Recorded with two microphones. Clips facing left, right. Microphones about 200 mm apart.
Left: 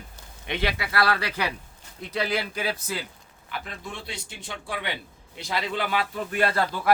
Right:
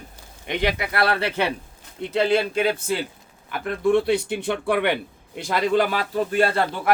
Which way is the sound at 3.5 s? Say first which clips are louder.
Right 16 dB; 55° right (ahead or behind).